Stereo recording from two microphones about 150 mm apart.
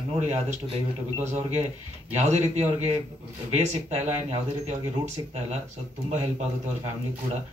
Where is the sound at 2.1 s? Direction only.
45° right (ahead or behind).